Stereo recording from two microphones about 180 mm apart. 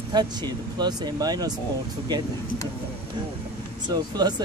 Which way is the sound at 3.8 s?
25° right (ahead or behind).